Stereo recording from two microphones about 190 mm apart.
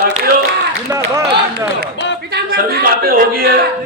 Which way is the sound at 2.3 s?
55° right (ahead or behind).